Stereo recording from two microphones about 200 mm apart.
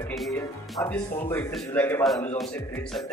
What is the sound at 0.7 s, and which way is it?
Speech, 10° left (ahead or behind).